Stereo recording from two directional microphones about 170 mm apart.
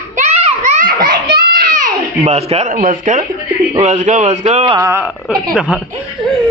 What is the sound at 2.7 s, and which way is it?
A man's voice, 50° right (ahead or behind).